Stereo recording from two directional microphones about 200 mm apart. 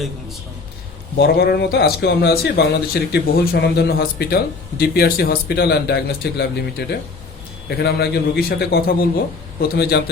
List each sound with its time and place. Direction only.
1.2 s a man's voice: 55° left (ahead or behind)